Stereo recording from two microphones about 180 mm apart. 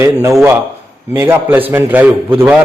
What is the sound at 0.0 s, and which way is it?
A man's voice, 15° right (ahead or behind).